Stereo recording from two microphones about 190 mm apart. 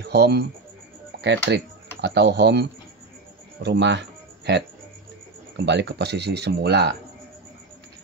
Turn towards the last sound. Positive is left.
turn(degrees=-60)  # may be behind; listen again after turning